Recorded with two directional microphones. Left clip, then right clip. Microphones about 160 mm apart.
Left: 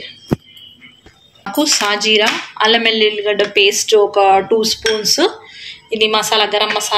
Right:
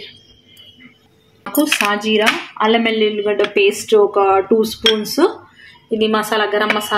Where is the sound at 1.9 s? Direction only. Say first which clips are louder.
Left 2 dB; 25° right (ahead or behind).